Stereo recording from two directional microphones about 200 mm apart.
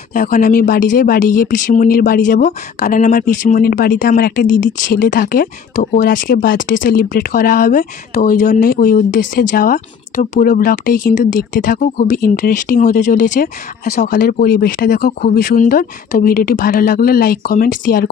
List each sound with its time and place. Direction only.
0.1 s speech: 45° left (ahead or behind)